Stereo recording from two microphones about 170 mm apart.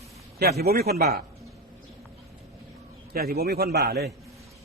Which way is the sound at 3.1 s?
65° right (ahead or behind).